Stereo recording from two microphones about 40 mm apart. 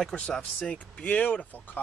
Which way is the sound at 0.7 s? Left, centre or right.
Left.